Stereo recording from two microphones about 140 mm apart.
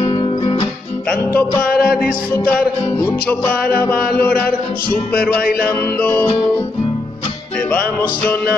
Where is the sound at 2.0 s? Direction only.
90° left.